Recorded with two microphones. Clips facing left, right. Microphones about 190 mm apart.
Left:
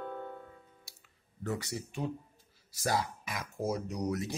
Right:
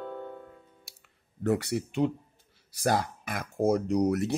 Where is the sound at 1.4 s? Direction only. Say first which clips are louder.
Right 9 dB; 65° right (ahead or behind).